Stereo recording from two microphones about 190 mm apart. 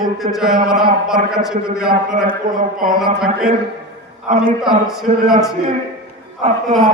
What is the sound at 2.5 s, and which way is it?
Speech, 45° right (ahead or behind).